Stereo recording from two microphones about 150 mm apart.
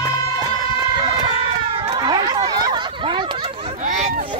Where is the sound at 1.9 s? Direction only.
30° right (ahead or behind).